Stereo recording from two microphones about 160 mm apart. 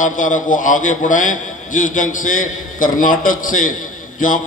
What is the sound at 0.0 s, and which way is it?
A man's voice, 55° left (ahead or behind).